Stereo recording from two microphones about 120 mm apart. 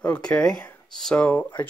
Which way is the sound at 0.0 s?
10° left (ahead or behind).